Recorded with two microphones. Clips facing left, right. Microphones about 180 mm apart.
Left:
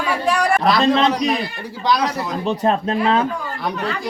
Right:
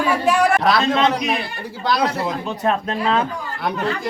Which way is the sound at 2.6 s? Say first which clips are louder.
Left 2 dB; 35° left (ahead or behind).